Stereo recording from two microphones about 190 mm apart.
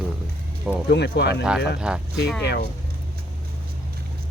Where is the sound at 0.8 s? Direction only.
60° left (ahead or behind).